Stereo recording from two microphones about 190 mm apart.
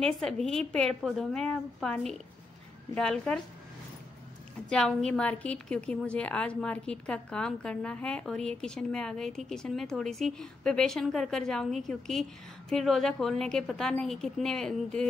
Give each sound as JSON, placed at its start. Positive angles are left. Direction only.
{"t": 0.0, "sound": "a woman's voice", "side_deg": 5}
{"t": 4.6, "sound": "a woman's voice", "side_deg": 5}